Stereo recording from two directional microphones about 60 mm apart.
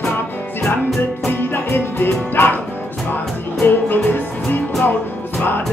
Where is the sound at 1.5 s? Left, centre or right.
Left.